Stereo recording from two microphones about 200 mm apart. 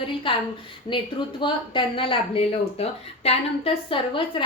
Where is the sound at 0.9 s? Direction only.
25° left (ahead or behind).